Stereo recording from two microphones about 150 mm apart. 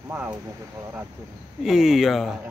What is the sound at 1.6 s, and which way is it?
Speech, 5° right (ahead or behind).